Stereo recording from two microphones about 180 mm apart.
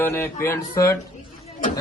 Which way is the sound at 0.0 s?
10° left (ahead or behind).